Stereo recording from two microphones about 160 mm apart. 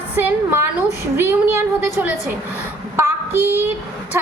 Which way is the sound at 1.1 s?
15° right (ahead or behind).